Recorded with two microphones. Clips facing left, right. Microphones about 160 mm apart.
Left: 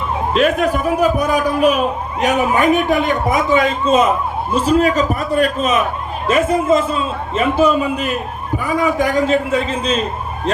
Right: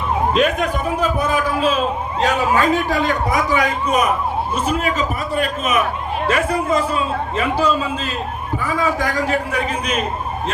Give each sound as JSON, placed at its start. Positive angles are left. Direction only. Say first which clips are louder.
{"t": 0.3, "sound": "a man's voice", "louder": "left 7 dB", "side_deg": 5}
{"t": 4.5, "sound": "a man's voice", "louder": "left 10 dB", "side_deg": 35}
{"t": 6.2, "sound": "a man's voice", "louder": "left 5 dB", "side_deg": 20}